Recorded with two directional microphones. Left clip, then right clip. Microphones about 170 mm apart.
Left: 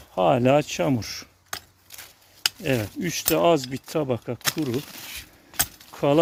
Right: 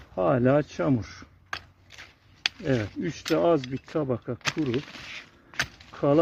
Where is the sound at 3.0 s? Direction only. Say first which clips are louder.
Left 4 dB; 60° left (ahead or behind).